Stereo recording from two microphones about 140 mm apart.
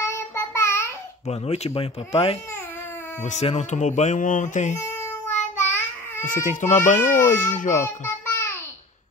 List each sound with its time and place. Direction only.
0.0 s child singing: 20° left (ahead or behind)
1.2 s speech: 50° left (ahead or behind)
3.3 s a child's voice: 55° left (ahead or behind)
4.7 s a sound: 20° left (ahead or behind)
6.2 s a child's voice: 65° left (ahead or behind)
8.0 s babbling: 20° left (ahead or behind)